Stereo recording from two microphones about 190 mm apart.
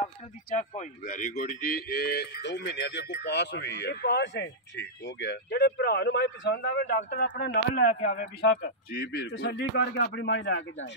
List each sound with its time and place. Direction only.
0.5 s speech: 40° left (ahead or behind); by 7.0 s 60° left (ahead or behind)
7.0 s speech: 45° left (ahead or behind); by 10.6 s 65° left (ahead or behind)